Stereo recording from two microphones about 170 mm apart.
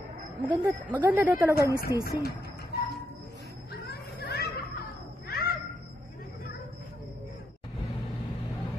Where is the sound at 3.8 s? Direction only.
70° left (ahead or behind).